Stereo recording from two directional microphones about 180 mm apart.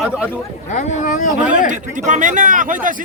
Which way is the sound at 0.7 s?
40° left (ahead or behind).